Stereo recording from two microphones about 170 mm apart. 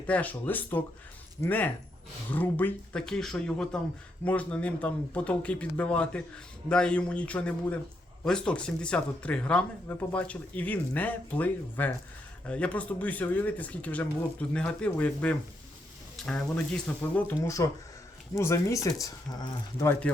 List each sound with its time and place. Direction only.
0.1 s speech: 10° left (ahead or behind)